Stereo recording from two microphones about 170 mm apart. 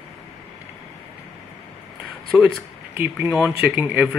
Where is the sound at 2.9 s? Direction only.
10° right (ahead or behind).